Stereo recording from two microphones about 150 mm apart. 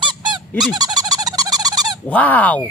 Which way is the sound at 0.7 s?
25° right (ahead or behind).